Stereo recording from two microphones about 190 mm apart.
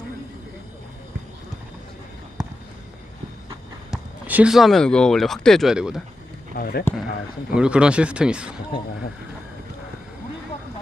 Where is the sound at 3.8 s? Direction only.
5° right (ahead or behind).